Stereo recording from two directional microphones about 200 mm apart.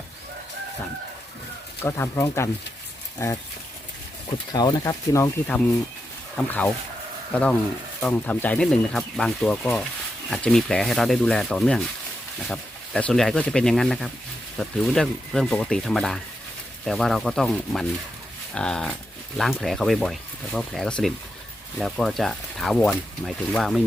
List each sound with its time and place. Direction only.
1.8 s speech: 15° left (ahead or behind)
4.5 s speech: 20° left (ahead or behind); by 23.8 s centre (ahead or behind)